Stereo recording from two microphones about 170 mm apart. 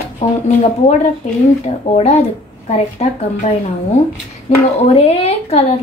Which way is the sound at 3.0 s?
40° left (ahead or behind).